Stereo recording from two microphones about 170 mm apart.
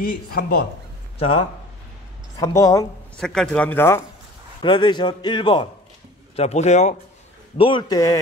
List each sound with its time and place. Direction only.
0.0 s speech: 60° left (ahead or behind)
1.2 s speech: 30° left (ahead or behind)
2.3 s a man's voice: 20° left (ahead or behind)
3.2 s speech: 5° left (ahead or behind)
4.6 s a man's voice: 30° left (ahead or behind)
6.3 s speech: 40° left (ahead or behind)
7.5 s a man's voice: 30° left (ahead or behind)